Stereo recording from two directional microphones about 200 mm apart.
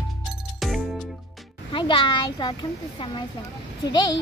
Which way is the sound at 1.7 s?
25° left (ahead or behind).